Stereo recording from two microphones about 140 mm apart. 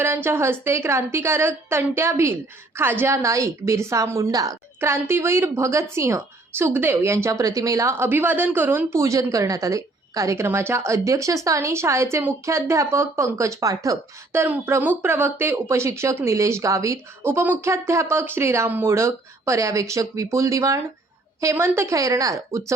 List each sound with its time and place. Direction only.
0.0 s a woman's voice: 15° right (ahead or behind)